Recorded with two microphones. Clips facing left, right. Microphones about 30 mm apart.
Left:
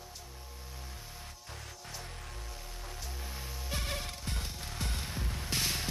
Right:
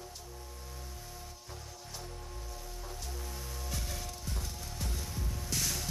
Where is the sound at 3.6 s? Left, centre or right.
Left.